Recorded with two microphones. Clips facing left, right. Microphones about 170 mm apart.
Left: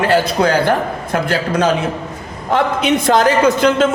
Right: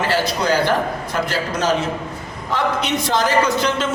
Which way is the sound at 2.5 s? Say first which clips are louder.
Left 6 dB; 55° left (ahead or behind).